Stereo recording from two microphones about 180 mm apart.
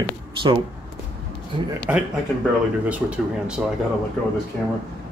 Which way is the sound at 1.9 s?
10° right (ahead or behind).